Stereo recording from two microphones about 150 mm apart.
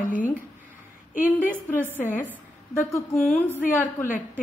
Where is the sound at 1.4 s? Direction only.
15° left (ahead or behind).